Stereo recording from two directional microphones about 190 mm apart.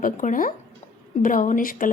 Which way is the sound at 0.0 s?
45° left (ahead or behind).